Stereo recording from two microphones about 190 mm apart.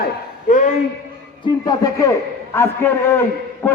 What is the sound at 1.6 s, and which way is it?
A man's voice, 20° left (ahead or behind).